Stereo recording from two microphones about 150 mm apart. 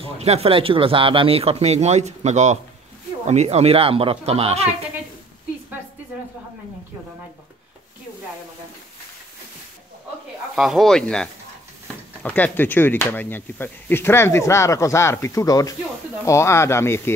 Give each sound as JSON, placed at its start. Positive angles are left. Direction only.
{"t": 0.0, "sound": "speech", "side_deg": -45}
{"t": 10.5, "sound": "speech", "side_deg": 0}